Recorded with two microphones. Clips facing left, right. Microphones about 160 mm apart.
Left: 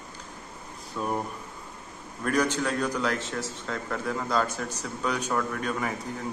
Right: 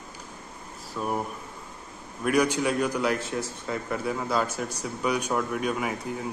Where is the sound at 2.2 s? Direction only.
10° right (ahead or behind).